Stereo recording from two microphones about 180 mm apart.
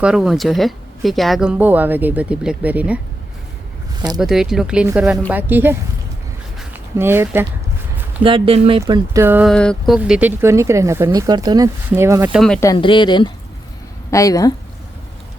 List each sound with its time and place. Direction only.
0.0 s speech: centre (ahead or behind)
4.2 s speech: centre (ahead or behind)
7.0 s speech: 10° right (ahead or behind)
8.2 s speech: 30° right (ahead or behind)
9.1 s speech: 10° right (ahead or behind)
9.5 s speech: 5° left (ahead or behind); by 12.3 s 15° right (ahead or behind)
12.3 s speech: centre (ahead or behind)
12.7 s speech: 25° left (ahead or behind)